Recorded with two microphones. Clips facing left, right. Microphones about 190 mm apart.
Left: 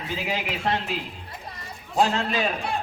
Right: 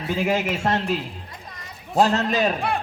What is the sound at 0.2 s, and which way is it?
Speech, 45° right (ahead or behind).